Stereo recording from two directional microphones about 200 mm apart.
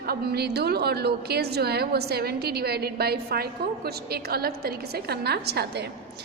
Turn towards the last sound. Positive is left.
turn(degrees=-55)  # may be behind; listen again after turning